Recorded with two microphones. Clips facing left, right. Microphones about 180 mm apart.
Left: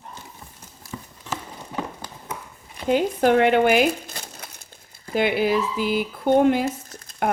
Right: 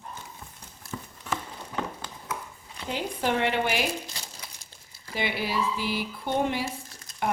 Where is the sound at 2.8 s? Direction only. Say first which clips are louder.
Left 10 dB; 50° left (ahead or behind).